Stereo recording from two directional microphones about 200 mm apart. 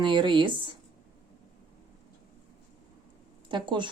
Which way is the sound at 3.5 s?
25° right (ahead or behind).